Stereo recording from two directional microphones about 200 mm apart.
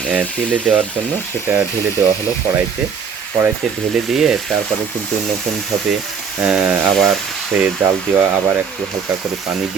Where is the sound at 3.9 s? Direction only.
Centre (ahead or behind).